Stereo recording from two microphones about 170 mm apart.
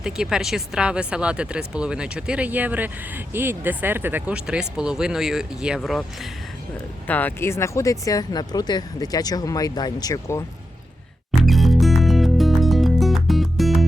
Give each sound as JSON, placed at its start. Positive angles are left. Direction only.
{"t": 0.0, "sound": "speech", "side_deg": -5}
{"t": 7.1, "sound": "speech", "side_deg": 10}
{"t": 11.3, "sound": "music", "side_deg": 0}